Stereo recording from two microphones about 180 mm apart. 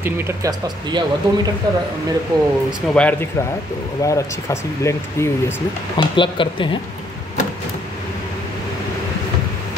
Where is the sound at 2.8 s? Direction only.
5° left (ahead or behind).